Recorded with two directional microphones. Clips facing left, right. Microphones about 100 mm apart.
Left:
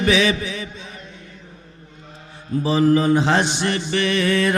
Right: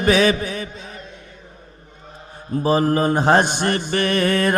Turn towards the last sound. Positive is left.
turn(degrees=-50)  # may be behind; listen again after turning